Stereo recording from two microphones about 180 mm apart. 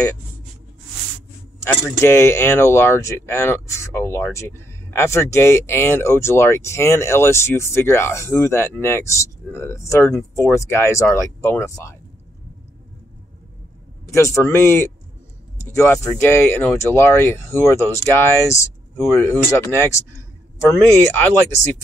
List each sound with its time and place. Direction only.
2.0 s speech: 15° left (ahead or behind)
14.1 s speech: 15° left (ahead or behind)